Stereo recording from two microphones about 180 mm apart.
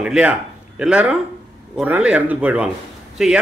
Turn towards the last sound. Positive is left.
turn(degrees=-5)  # may be behind; listen again after turning